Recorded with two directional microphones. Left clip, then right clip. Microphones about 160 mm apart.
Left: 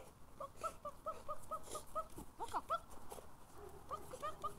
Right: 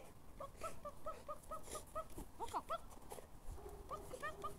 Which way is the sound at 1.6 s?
5° left (ahead or behind).